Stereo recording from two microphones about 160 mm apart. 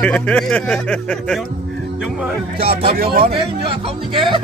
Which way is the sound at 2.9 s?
70° right (ahead or behind).